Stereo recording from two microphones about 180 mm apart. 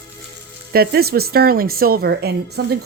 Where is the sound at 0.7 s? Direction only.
60° right (ahead or behind).